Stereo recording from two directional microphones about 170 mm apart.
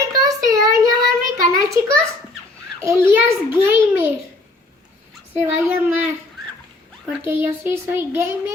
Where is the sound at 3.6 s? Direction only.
15° right (ahead or behind).